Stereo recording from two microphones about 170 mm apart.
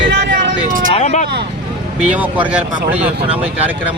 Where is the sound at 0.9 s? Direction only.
45° left (ahead or behind).